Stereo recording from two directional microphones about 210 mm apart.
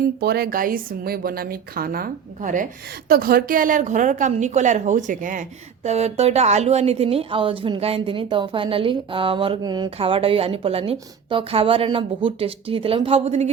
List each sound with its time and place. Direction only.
0.2 s a woman's voice: 45° right (ahead or behind); by 13.5 s 30° right (ahead or behind)